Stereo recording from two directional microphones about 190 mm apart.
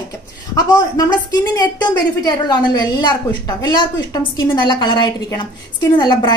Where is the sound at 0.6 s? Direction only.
20° left (ahead or behind).